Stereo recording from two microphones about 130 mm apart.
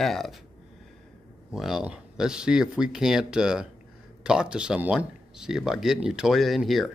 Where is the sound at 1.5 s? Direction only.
5° right (ahead or behind).